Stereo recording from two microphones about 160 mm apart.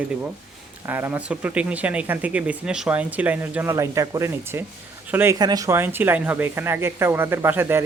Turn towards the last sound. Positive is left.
turn(degrees=-15)  # may be behind; listen again after turning